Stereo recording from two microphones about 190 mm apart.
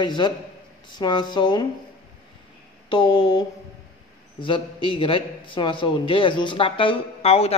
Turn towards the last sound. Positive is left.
turn(degrees=30)  # may be behind; listen again after turning